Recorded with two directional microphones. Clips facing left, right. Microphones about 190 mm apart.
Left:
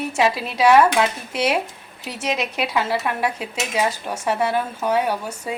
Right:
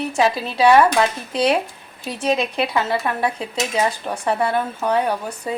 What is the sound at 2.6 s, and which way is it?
A woman's voice, 10° left (ahead or behind).